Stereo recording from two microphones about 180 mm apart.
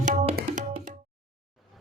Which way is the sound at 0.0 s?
45° right (ahead or behind).